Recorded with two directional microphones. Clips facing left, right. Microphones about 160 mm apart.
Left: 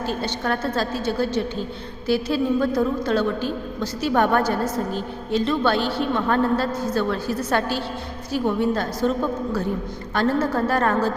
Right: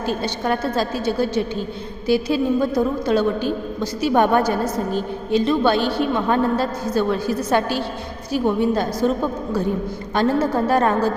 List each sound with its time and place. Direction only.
0.0 s a woman's voice: 15° right (ahead or behind)